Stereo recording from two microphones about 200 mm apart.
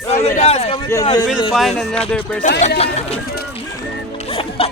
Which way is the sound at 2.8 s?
30° left (ahead or behind).